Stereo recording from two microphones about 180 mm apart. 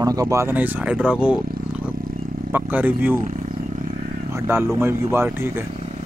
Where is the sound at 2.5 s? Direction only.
10° right (ahead or behind).